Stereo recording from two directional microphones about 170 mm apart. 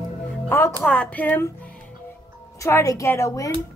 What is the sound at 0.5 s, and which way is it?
Speech, 15° left (ahead or behind).